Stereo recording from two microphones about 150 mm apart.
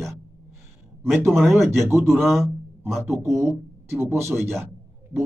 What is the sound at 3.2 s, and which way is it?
Speech, 20° right (ahead or behind).